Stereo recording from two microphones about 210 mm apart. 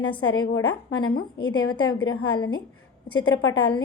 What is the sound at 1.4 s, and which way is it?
A woman's voice, 20° left (ahead or behind).